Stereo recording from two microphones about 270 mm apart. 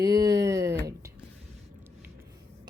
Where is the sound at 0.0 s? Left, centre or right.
Centre.